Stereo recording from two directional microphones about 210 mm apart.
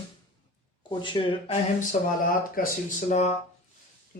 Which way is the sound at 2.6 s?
45° left (ahead or behind).